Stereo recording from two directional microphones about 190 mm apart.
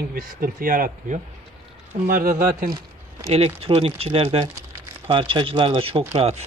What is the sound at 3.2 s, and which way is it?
Speech, 30° right (ahead or behind).